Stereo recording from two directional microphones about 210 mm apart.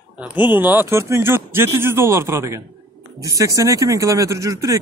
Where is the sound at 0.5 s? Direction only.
10° right (ahead or behind).